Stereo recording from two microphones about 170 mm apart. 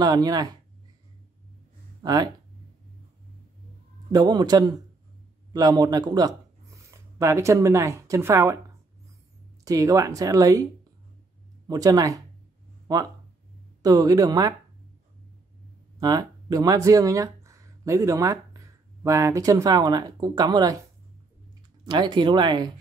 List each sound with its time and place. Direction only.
0.0 s speech: 25° right (ahead or behind)
2.0 s speech: 25° right (ahead or behind)
4.1 s speech: 25° right (ahead or behind)
9.7 s speech: 20° right (ahead or behind)
16.0 s speech: 20° right (ahead or behind)
21.8 s speech: 25° right (ahead or behind)